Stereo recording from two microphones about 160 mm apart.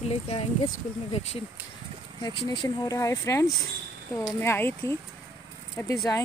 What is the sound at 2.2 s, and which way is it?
Speech, 25° left (ahead or behind).